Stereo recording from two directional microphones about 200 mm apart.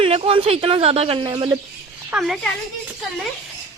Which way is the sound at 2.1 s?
Centre (ahead or behind).